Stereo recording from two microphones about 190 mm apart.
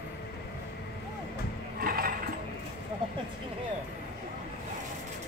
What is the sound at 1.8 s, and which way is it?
Mechanisms, 50° right (ahead or behind).